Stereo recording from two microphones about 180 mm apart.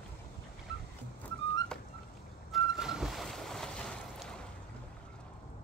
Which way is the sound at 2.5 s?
Centre (ahead or behind).